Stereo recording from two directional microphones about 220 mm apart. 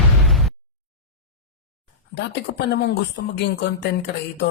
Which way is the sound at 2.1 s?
50° left (ahead or behind).